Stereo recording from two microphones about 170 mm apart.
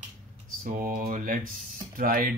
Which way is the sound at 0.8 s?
50° right (ahead or behind).